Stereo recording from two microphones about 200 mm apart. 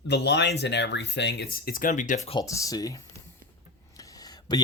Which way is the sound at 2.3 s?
20° left (ahead or behind).